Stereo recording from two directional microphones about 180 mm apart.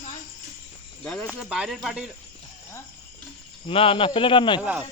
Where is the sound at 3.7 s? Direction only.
30° left (ahead or behind).